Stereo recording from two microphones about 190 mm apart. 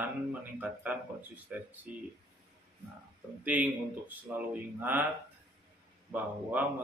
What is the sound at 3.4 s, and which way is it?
Speech, 10° right (ahead or behind).